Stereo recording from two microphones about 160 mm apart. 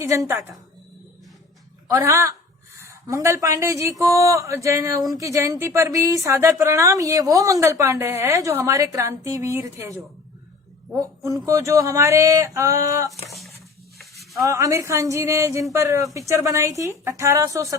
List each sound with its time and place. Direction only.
0.0 s a woman's voice: 15° right (ahead or behind)
1.9 s a woman's voice: 20° right (ahead or behind)
11.2 s speech: 20° right (ahead or behind)
13.2 s speech: centre (ahead or behind)
14.0 s a sound: centre (ahead or behind)
14.4 s speech: 20° right (ahead or behind)